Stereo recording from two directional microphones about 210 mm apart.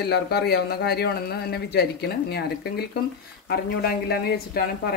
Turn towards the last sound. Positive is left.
turn(degrees=50)  # may be behind; listen again after turning